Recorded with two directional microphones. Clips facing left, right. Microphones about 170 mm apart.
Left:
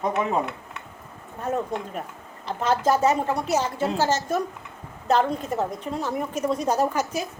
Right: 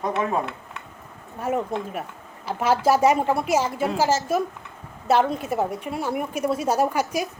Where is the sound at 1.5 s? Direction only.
10° right (ahead or behind).